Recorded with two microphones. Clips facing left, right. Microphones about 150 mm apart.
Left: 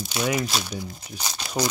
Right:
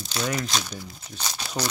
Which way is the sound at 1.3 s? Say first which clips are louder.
Left 4 dB; 10° left (ahead or behind).